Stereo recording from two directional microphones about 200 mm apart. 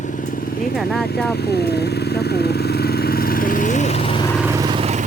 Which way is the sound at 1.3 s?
55° left (ahead or behind).